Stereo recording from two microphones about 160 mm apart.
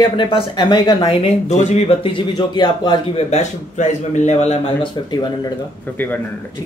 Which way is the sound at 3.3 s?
45° left (ahead or behind).